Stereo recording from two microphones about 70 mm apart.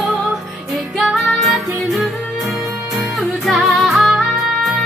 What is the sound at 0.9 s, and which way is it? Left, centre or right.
Music, centre.